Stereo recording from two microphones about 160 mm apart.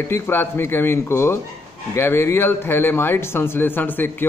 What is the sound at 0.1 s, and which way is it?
A man's voice, 15° left (ahead or behind).